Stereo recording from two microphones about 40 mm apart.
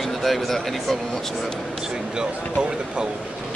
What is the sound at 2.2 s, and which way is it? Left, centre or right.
Speech, centre.